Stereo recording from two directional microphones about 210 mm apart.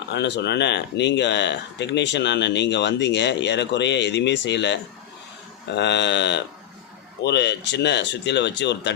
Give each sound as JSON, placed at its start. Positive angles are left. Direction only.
{"t": 0.1, "sound": "speech", "side_deg": 55}